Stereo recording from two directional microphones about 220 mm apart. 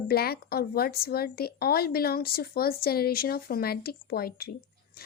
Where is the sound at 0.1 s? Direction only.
45° left (ahead or behind).